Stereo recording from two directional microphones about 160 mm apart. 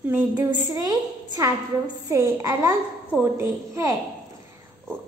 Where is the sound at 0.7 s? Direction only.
20° right (ahead or behind).